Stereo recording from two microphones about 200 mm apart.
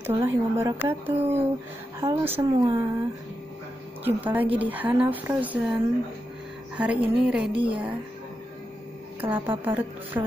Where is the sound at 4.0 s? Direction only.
10° right (ahead or behind).